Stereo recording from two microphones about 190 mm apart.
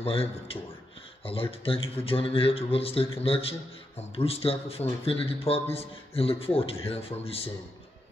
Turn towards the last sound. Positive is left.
turn(degrees=30)  # may be behind; listen again after turning